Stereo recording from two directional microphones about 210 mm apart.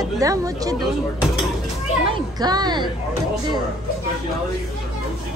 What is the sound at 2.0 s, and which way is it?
Speech, 20° right (ahead or behind).